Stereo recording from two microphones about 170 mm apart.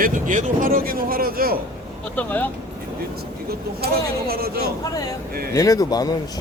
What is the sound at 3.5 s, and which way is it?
Speech, 65° right (ahead or behind).